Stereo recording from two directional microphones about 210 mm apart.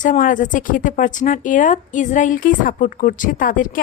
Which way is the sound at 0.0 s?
40° left (ahead or behind).